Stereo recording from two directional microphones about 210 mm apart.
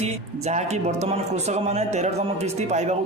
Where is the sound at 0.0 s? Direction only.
30° right (ahead or behind).